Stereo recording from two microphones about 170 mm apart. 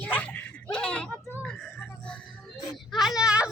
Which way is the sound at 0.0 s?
10° left (ahead or behind).